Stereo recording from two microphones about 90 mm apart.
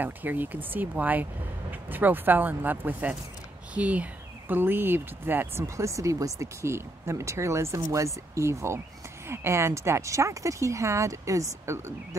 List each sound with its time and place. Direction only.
0.0 s speech: 20° right (ahead or behind)